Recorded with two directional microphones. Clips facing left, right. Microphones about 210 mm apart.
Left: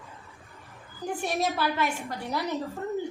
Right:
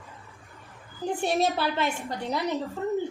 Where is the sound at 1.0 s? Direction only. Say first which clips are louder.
Right 3 dB; 25° right (ahead or behind).